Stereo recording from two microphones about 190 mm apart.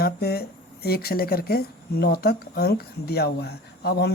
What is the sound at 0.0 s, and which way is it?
Speech, 55° left (ahead or behind).